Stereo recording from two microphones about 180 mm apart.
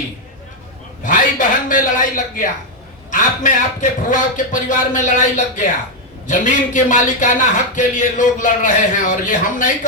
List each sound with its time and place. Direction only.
1.0 s a man's voice: 45° left (ahead or behind)